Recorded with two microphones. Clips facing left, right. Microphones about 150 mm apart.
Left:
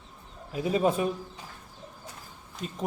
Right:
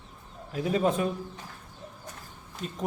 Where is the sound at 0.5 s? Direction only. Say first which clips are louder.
Left 1 dB; 10° left (ahead or behind).